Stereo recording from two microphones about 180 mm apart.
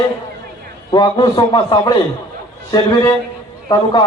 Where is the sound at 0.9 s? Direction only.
25° left (ahead or behind).